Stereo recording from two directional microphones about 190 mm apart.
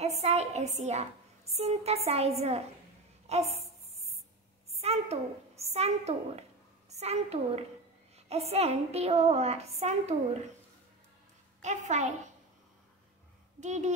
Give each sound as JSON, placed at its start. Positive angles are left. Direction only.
{"t": 0.0, "sound": "a woman's voice", "side_deg": -35}
{"t": 4.6, "sound": "a woman's voice", "side_deg": -35}
{"t": 11.6, "sound": "a woman's voice", "side_deg": -40}
{"t": 13.6, "sound": "a woman's voice", "side_deg": -40}